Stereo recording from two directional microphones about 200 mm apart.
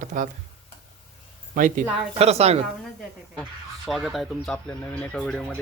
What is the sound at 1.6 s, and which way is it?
A woman's voice, 40° right (ahead or behind).